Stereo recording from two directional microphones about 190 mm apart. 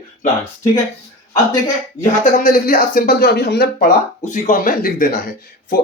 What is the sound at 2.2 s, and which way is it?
Speech, 50° left (ahead or behind).